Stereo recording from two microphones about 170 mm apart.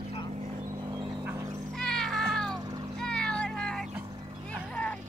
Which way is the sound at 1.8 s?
5° left (ahead or behind).